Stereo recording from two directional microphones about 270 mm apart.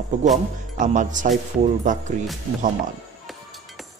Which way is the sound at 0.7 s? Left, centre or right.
Right.